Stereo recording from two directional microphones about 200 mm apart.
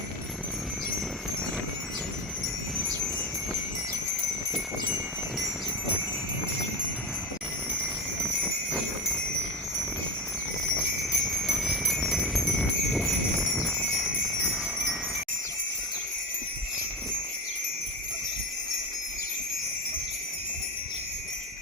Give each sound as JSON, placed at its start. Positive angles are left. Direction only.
{"t": 2.7, "sound": "wind chime", "side_deg": 5}
{"t": 11.1, "sound": "jingle bell", "side_deg": 0}